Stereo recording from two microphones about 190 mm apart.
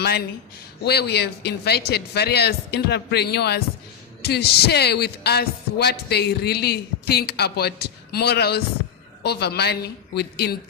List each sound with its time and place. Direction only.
0.0 s speech: 55° left (ahead or behind)